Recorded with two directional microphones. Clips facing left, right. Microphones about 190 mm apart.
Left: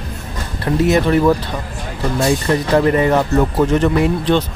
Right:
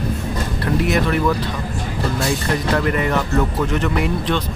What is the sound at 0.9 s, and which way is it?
Speech, 30° left (ahead or behind).